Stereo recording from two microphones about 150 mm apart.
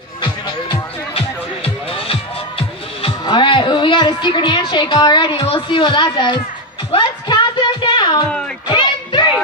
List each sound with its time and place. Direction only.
0.2 s music: 35° left (ahead or behind)
3.0 s a woman's voice: 35° left (ahead or behind)
6.9 s music: 30° left (ahead or behind)